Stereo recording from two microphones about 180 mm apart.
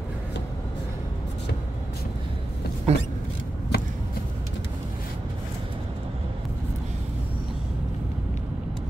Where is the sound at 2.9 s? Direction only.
35° right (ahead or behind).